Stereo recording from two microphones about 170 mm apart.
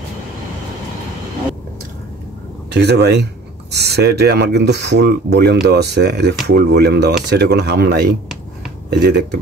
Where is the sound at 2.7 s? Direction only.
75° right (ahead or behind).